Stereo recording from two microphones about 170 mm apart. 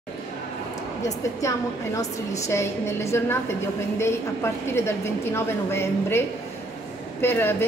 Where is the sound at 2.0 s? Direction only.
15° left (ahead or behind).